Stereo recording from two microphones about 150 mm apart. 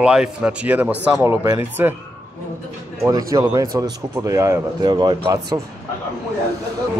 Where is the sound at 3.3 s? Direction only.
25° right (ahead or behind).